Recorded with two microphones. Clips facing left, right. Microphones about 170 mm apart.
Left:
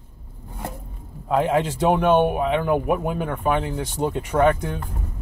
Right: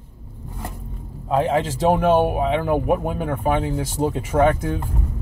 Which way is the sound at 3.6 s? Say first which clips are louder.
Right 2 dB; centre (ahead or behind).